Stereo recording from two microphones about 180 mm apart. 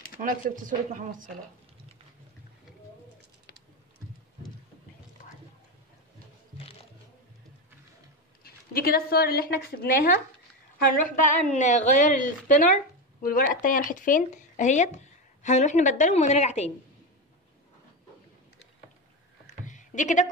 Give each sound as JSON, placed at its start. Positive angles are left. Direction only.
{"t": 0.2, "sound": "speech", "side_deg": -45}
{"t": 8.5, "sound": "a woman's voice", "side_deg": 55}
{"t": 19.4, "sound": "a sound", "side_deg": 40}